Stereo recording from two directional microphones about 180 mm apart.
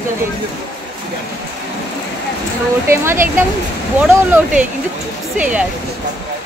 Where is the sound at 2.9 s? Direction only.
15° right (ahead or behind).